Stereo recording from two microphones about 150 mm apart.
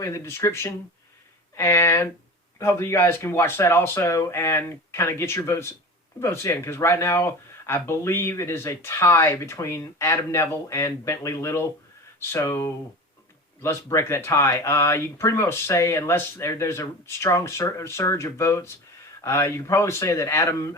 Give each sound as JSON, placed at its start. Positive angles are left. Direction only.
{"t": 0.0, "sound": "speech", "side_deg": 20}